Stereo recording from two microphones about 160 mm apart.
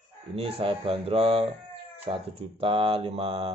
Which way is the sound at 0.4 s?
35° right (ahead or behind).